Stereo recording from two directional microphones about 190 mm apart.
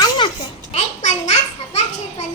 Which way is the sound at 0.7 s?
35° left (ahead or behind).